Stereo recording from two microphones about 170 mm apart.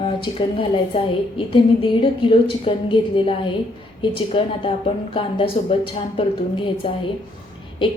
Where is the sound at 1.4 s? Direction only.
30° left (ahead or behind).